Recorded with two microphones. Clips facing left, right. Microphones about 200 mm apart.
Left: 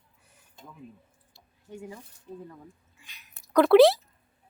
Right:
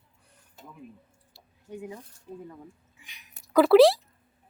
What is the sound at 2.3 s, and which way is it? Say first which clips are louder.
A woman's voice: right 1 dB; centre (ahead or behind).